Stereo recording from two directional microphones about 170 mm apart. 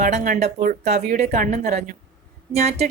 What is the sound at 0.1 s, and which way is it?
Speech, 45° right (ahead or behind).